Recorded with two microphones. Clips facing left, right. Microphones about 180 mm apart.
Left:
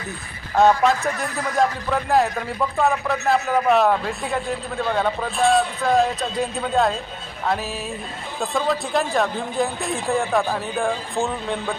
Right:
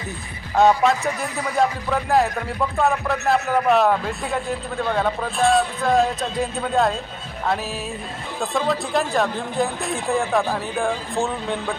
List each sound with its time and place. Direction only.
0.5 s a man's voice: centre (ahead or behind)